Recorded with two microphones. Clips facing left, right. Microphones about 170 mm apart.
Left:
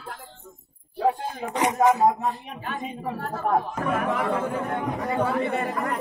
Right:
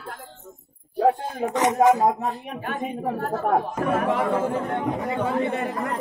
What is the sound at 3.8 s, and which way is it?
Chatter, 35° right (ahead or behind).